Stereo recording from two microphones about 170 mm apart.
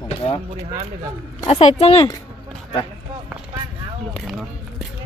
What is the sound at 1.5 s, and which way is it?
Speech, 40° left (ahead or behind).